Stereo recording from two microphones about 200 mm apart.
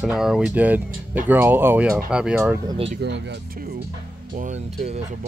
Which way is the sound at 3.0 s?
60° right (ahead or behind).